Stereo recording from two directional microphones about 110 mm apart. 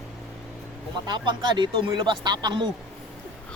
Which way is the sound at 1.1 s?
45° right (ahead or behind).